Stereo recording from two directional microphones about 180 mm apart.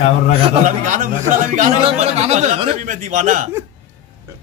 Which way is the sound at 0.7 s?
45° right (ahead or behind).